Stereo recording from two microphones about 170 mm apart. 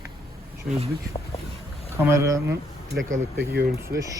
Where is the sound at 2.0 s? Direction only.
15° right (ahead or behind).